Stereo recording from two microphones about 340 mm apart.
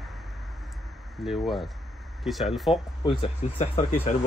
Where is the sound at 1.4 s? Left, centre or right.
Centre.